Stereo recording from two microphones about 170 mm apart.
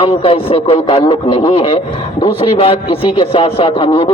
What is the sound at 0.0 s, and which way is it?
A man's voice, 35° left (ahead or behind).